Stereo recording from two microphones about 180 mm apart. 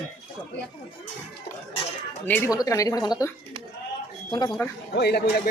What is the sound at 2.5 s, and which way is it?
A woman's voice, 20° left (ahead or behind).